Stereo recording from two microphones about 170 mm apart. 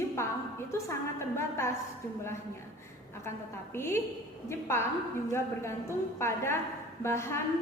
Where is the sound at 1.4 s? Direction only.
15° left (ahead or behind).